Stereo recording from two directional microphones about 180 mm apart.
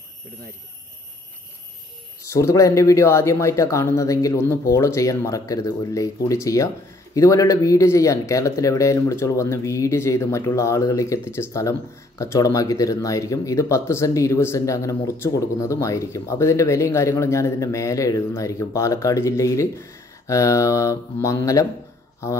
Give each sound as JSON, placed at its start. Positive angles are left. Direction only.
{"t": 2.2, "sound": "speech", "side_deg": 15}